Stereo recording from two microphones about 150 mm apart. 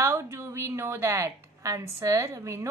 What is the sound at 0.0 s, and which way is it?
A woman's voice, 20° right (ahead or behind).